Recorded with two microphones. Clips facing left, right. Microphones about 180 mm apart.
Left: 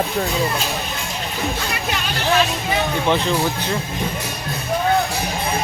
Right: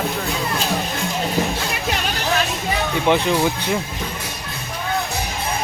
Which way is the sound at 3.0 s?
15° right (ahead or behind).